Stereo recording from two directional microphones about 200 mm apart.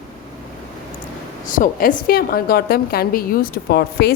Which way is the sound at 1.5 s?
45° left (ahead or behind).